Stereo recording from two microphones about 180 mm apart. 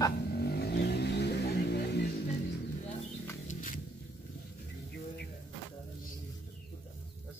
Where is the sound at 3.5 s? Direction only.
45° left (ahead or behind).